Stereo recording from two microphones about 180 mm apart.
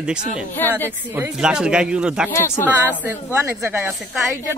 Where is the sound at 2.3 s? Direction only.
15° left (ahead or behind).